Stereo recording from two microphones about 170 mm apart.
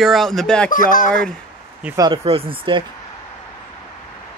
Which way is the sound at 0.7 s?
55° left (ahead or behind).